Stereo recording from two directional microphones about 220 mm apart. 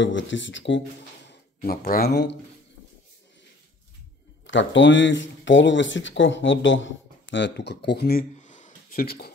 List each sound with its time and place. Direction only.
0.0 s speech: 55° left (ahead or behind)
1.6 s speech: 40° left (ahead or behind)
4.5 s speech: 55° left (ahead or behind)